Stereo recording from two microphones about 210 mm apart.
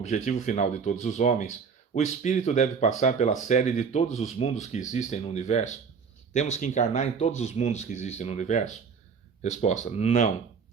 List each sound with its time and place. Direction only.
0.0 s speech: 30° left (ahead or behind)